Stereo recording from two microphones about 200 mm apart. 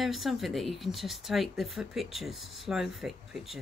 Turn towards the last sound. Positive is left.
turn(degrees=0)  # may be behind; listen again after turning